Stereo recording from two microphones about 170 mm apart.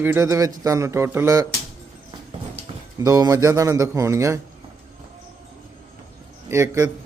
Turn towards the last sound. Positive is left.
turn(degrees=-20)  # may be behind; listen again after turning